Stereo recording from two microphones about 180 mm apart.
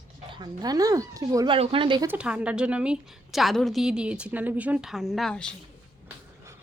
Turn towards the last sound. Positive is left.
turn(degrees=5)  # may be behind; listen again after turning